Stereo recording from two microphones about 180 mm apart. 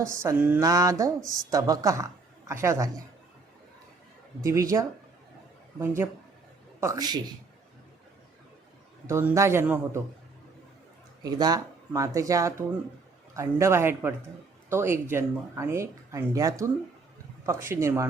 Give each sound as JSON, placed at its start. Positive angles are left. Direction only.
{"t": 0.0, "sound": "speech", "side_deg": -15}
{"t": 0.6, "sound": "speech", "side_deg": -20}
{"t": 4.4, "sound": "a man's voice", "side_deg": -15}
{"t": 9.0, "sound": "speech", "side_deg": -15}
{"t": 11.2, "sound": "speech", "side_deg": -20}